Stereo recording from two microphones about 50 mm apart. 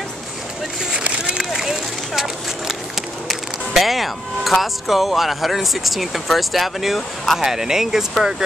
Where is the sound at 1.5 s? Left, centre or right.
Centre.